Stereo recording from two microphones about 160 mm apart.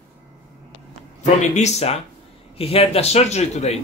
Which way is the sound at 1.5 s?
40° left (ahead or behind).